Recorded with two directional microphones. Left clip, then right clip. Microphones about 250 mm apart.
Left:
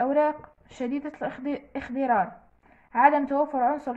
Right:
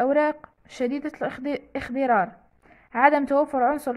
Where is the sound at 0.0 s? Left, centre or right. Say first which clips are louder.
Right 2 dB; right.